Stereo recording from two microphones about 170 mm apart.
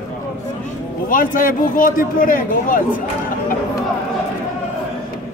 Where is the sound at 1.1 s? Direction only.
55° left (ahead or behind).